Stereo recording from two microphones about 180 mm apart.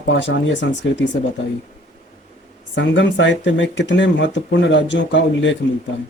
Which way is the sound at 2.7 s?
90° left.